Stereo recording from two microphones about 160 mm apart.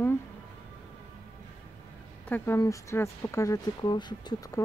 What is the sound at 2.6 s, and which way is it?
Speech, 20° left (ahead or behind).